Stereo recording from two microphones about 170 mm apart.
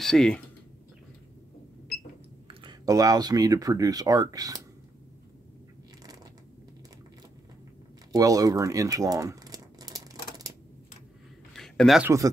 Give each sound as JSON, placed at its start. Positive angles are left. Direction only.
{"t": 0.0, "sound": "speech", "side_deg": 5}
{"t": 2.4, "sound": "speech", "side_deg": -25}
{"t": 8.1, "sound": "crumpling", "side_deg": -20}
{"t": 11.5, "sound": "a sound", "side_deg": 5}
{"t": 12.0, "sound": "speech", "side_deg": -20}